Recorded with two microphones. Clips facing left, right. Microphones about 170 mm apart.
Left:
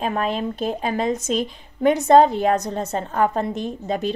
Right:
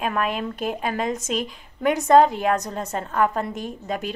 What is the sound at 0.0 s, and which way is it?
Speech, 30° left (ahead or behind).